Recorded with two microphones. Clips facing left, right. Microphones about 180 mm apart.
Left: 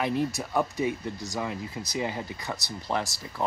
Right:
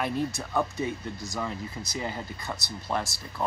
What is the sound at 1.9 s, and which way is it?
Speech, 15° left (ahead or behind).